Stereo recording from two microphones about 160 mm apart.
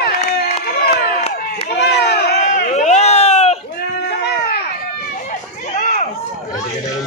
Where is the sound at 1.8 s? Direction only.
90° left.